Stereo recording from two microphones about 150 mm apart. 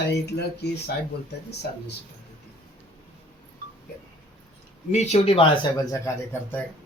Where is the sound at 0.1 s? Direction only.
90° left.